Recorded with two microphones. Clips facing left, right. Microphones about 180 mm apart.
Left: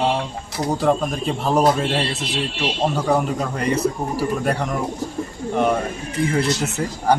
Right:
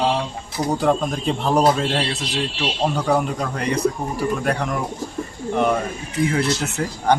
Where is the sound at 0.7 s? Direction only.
Centre (ahead or behind).